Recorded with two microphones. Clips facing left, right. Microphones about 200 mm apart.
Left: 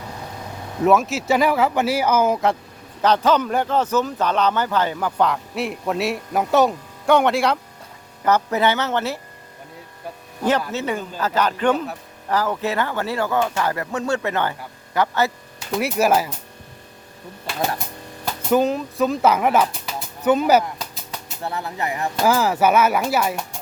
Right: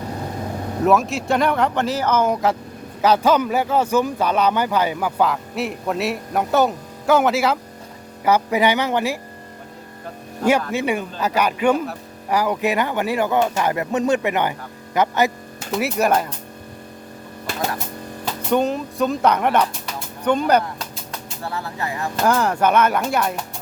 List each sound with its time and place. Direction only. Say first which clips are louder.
0.8 s speech: left 1 dB; centre (ahead or behind)
10.7 s speech: right 3 dB; 10° right (ahead or behind)
15.7 s speech: even; centre (ahead or behind)
18.5 s speech: left 1 dB; centre (ahead or behind)
21.4 s speech: left 1 dB; 20° left (ahead or behind)
22.2 s speech: even; 5° left (ahead or behind)